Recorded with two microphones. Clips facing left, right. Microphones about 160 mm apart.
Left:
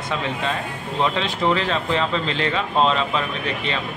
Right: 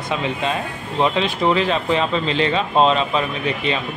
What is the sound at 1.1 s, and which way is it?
Speech, 15° right (ahead or behind).